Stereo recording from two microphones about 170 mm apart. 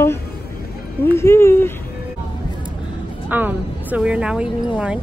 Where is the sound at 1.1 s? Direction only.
15° left (ahead or behind).